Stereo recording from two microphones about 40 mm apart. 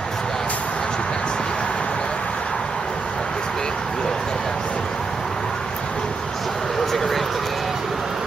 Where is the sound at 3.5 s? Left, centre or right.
Centre.